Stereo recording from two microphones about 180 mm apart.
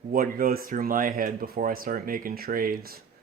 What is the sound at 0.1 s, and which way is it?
Speech, 55° right (ahead or behind).